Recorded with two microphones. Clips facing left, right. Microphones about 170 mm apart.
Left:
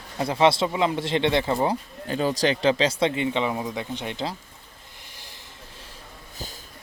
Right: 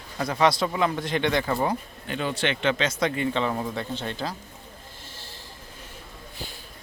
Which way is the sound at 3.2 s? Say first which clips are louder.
Left 1 dB; 15° left (ahead or behind).